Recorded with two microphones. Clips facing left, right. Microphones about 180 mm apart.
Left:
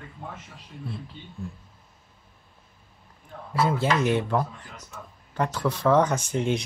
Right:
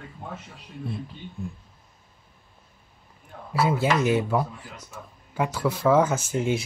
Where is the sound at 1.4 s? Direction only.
20° right (ahead or behind).